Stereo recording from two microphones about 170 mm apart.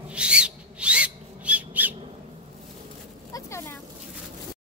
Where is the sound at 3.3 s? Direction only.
15° left (ahead or behind).